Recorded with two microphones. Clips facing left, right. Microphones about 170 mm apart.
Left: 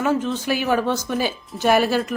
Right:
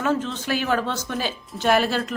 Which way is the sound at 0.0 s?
15° left (ahead or behind).